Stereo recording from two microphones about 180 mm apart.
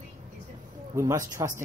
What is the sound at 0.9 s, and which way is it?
Speech, 20° right (ahead or behind).